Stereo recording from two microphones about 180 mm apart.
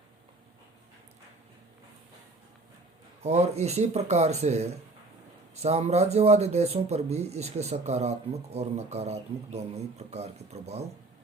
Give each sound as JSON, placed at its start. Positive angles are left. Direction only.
{"t": 3.2, "sound": "speech", "side_deg": -35}